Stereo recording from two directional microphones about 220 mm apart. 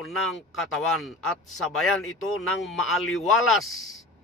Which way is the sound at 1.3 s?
75° left (ahead or behind).